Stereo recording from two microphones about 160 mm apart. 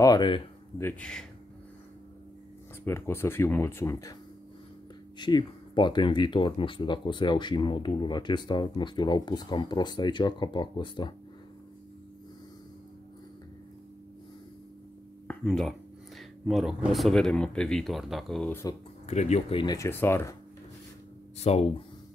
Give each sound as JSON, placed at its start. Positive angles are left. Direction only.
{"t": 0.0, "sound": "speech", "side_deg": 25}
{"t": 0.7, "sound": "speech", "side_deg": 10}
{"t": 2.8, "sound": "speech", "side_deg": 15}
{"t": 5.2, "sound": "speech", "side_deg": 30}
{"t": 15.2, "sound": "a sound", "side_deg": 0}
{"t": 16.2, "sound": "speech", "side_deg": 0}
{"t": 18.5, "sound": "speech", "side_deg": 20}
{"t": 19.0, "sound": "speech", "side_deg": 45}
{"t": 19.6, "sound": "speech", "side_deg": 25}
{"t": 19.9, "sound": "speech", "side_deg": 15}
{"t": 21.4, "sound": "speech", "side_deg": 40}